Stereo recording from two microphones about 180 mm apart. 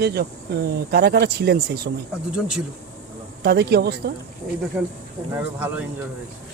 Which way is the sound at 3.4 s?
60° right (ahead or behind).